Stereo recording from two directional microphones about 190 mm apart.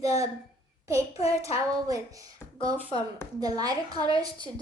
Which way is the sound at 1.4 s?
15° right (ahead or behind).